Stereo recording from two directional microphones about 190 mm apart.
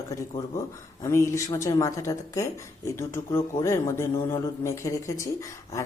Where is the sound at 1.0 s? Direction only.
15° left (ahead or behind).